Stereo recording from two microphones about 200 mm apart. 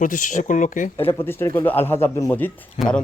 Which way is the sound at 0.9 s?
25° left (ahead or behind).